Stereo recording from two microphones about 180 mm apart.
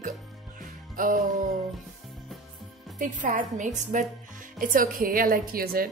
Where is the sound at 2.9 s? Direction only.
45° right (ahead or behind).